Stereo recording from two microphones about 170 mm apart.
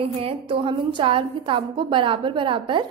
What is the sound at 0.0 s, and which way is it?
A woman's voice, 30° right (ahead or behind).